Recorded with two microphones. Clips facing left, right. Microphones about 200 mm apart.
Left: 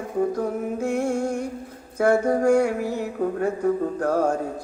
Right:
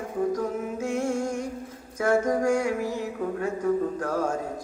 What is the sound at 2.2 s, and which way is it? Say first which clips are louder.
Female singing: left 4 dB; 35° left (ahead or behind).